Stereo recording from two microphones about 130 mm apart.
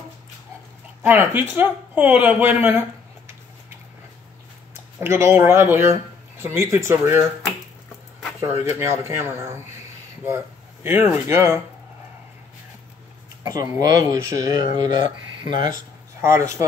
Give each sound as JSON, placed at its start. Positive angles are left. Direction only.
{"t": 1.0, "sound": "speech", "side_deg": -15}
{"t": 5.0, "sound": "speech", "side_deg": -20}
{"t": 8.4, "sound": "speech", "side_deg": -20}
{"t": 13.4, "sound": "speech", "side_deg": -30}
{"t": 16.2, "sound": "speech", "side_deg": -20}